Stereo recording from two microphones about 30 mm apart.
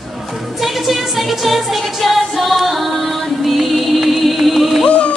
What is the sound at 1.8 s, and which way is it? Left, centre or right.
Music, centre.